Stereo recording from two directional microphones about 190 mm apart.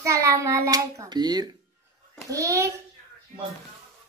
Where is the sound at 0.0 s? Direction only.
15° right (ahead or behind).